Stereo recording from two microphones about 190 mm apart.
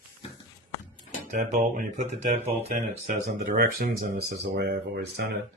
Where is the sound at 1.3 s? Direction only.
40° right (ahead or behind).